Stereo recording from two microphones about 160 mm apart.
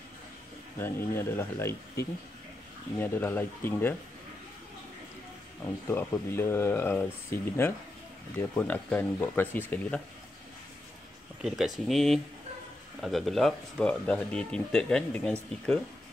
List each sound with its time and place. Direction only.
0.7 s speech: 15° left (ahead or behind)
5.9 s speech: 15° left (ahead or behind)
11.4 s speech: 5° right (ahead or behind)